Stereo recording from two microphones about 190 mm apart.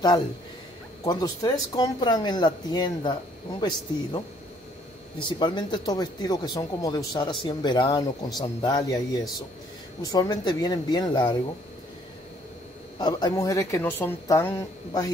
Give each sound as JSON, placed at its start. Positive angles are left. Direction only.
{"t": 1.0, "sound": "a man's voice", "side_deg": 20}
{"t": 5.4, "sound": "a man's voice", "side_deg": 25}
{"t": 13.0, "sound": "speech", "side_deg": 20}